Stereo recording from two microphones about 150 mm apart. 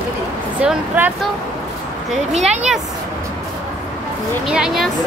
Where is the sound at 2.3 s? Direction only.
50° right (ahead or behind).